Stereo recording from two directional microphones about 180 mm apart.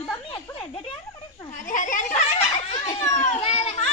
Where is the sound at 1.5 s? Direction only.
45° left (ahead or behind).